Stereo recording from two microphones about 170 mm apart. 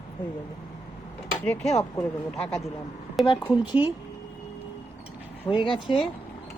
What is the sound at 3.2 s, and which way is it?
Speech, centre (ahead or behind).